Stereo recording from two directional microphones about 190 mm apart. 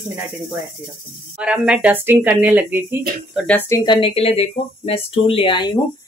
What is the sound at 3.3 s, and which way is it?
Speech, 10° left (ahead or behind).